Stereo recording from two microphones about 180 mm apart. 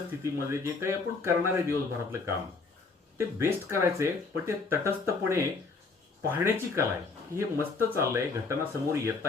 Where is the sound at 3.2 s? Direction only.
15° right (ahead or behind).